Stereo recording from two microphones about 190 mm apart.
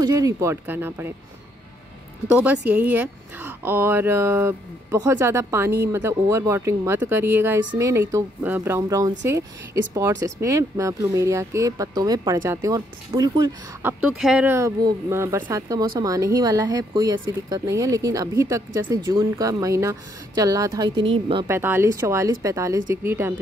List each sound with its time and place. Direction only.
0.0 s a woman's voice: 15° right (ahead or behind)
2.2 s a woman's voice: 10° right (ahead or behind)
10.2 s a woman's voice: 15° right (ahead or behind)
14.1 s a woman's voice: 5° right (ahead or behind); by 21.5 s 25° right (ahead or behind)
21.5 s a woman's voice: 10° right (ahead or behind)